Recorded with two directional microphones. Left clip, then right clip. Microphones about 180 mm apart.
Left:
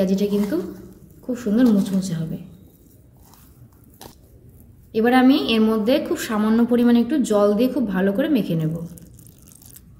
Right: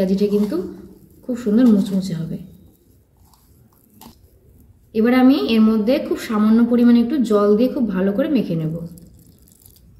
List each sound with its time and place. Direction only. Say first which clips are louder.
0.0 s speech: right 3 dB; 25° left (ahead or behind)
4.9 s a woman's voice: right 1 dB; 30° left (ahead or behind)